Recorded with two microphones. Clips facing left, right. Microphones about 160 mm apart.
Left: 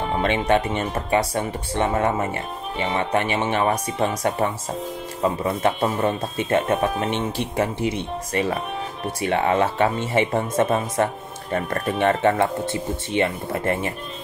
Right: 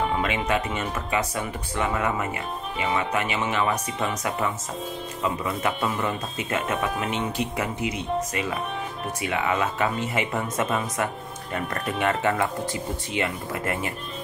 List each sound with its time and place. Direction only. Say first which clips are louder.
0.1 s speech: left 5 dB; 35° left (ahead or behind)
8.3 s speech: left 5 dB; 35° left (ahead or behind)